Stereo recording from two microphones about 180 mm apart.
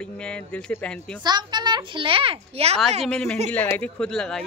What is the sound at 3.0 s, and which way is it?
A man's voice, 5° left (ahead or behind).